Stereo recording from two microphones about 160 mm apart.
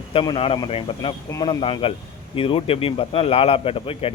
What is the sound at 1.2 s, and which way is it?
Speech, 20° left (ahead or behind).